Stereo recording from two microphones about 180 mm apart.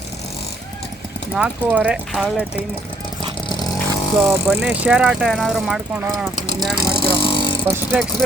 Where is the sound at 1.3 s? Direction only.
5° right (ahead or behind).